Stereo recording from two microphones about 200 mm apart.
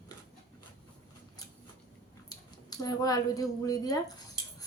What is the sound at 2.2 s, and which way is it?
A woman's voice, 20° left (ahead or behind).